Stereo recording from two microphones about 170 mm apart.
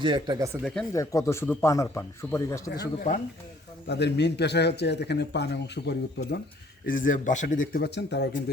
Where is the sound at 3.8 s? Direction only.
80° left.